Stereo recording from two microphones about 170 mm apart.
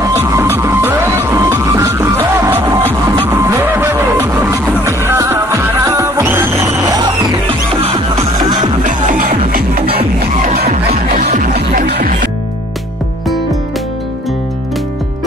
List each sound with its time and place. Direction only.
0.0 s music: 20° right (ahead or behind)
7.4 s music: 35° right (ahead or behind)
8.2 s music: 25° right (ahead or behind)
8.8 s music: 50° right (ahead or behind)
10.9 s music: 50° right (ahead or behind)
11.5 s music: 65° right (ahead or behind)